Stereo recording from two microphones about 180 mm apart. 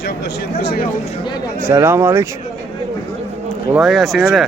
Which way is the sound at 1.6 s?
15° right (ahead or behind).